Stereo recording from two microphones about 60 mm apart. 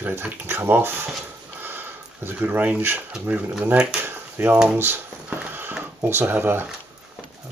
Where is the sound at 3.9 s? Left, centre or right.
Right.